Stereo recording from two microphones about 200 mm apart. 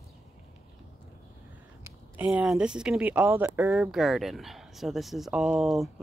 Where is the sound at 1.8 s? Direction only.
10° right (ahead or behind).